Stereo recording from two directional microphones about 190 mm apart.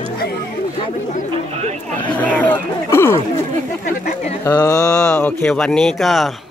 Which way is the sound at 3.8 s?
35° left (ahead or behind).